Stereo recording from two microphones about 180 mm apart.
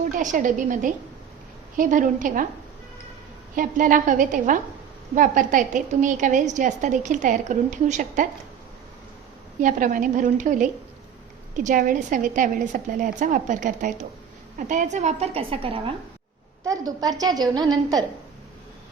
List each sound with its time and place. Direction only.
0.2 s a woman's voice: 45° right (ahead or behind)
3.5 s a woman's voice: 50° right (ahead or behind)
9.6 s a woman's voice: 45° right (ahead or behind); by 15.8 s 30° right (ahead or behind)
16.6 s a woman's voice: 20° right (ahead or behind)